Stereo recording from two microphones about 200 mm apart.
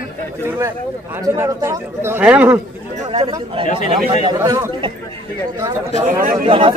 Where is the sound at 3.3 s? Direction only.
15° right (ahead or behind).